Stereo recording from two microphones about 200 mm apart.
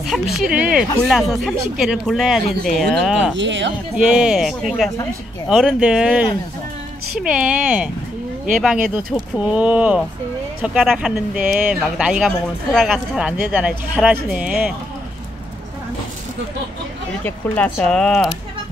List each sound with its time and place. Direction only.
0.0 s speech: centre (ahead or behind)
3.3 s speech: 65° right (ahead or behind)
3.9 s speech: 5° right (ahead or behind)
17.2 s speech: 5° left (ahead or behind)